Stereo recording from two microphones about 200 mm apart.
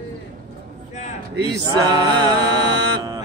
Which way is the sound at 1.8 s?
20° right (ahead or behind).